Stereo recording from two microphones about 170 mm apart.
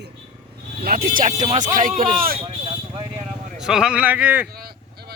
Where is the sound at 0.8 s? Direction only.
55° right (ahead or behind).